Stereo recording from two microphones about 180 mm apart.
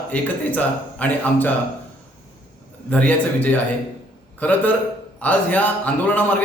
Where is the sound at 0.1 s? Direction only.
10° left (ahead or behind).